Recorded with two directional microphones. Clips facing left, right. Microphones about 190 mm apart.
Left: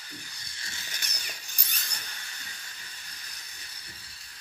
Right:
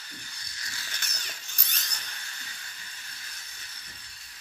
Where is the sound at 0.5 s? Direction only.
25° left (ahead or behind).